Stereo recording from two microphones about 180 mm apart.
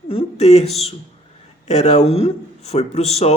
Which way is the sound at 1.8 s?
40° left (ahead or behind).